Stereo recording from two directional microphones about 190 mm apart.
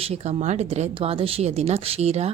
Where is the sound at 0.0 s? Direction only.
35° right (ahead or behind).